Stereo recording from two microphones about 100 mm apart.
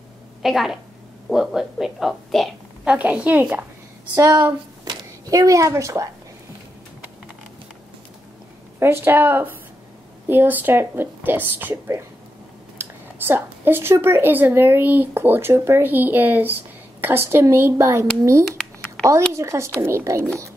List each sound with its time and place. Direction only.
0.4 s a woman's voice: 5° right (ahead or behind)
2.8 s a woman's voice: 15° right (ahead or behind)
4.8 s speech: 35° right (ahead or behind)
8.7 s speech: 25° right (ahead or behind)
18.6 s a sound: 5° left (ahead or behind)
19.3 s speech: 30° right (ahead or behind)